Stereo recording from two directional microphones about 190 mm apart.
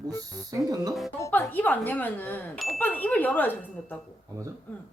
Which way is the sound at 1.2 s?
10° left (ahead or behind).